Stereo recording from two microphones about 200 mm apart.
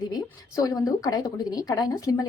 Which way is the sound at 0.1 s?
20° left (ahead or behind).